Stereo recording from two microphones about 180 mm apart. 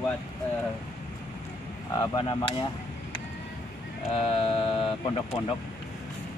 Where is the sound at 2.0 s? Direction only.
25° left (ahead or behind).